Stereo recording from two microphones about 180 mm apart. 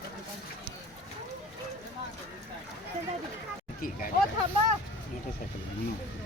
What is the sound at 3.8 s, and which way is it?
Vehicle, 50° left (ahead or behind).